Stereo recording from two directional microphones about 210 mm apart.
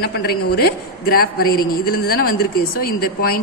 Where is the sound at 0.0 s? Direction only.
45° left (ahead or behind).